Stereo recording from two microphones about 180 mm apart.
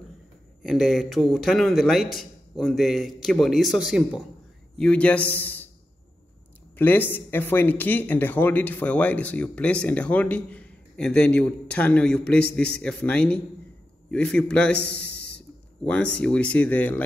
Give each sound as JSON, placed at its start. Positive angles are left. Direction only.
{"t": 0.6, "sound": "a man's voice", "side_deg": 0}
{"t": 6.8, "sound": "a man's voice", "side_deg": 10}
{"t": 15.0, "sound": "a sound", "side_deg": 70}
{"t": 15.8, "sound": "speech", "side_deg": 5}